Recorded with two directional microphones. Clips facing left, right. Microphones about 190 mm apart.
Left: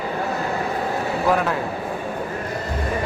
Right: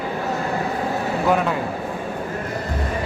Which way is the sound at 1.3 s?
Centre (ahead or behind).